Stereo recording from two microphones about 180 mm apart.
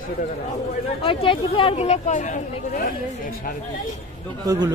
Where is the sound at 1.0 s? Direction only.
30° left (ahead or behind); by 2.9 s 45° left (ahead or behind).